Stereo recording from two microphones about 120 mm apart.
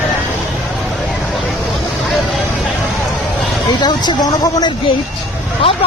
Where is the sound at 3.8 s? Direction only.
35° left (ahead or behind).